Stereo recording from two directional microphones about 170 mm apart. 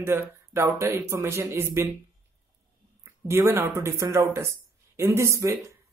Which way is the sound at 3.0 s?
15° right (ahead or behind).